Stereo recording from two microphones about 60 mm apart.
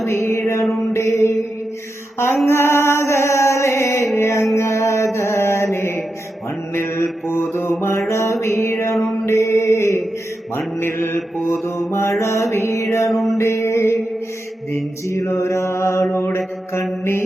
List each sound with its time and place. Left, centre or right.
0.1 s mantra: left
2.1 s music: left
9.2 s mantra: left
13.1 s music: centre
13.3 s mantra: left
15.3 s mantra: left